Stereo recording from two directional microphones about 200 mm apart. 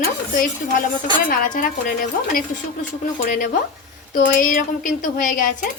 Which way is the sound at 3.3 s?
45° left (ahead or behind).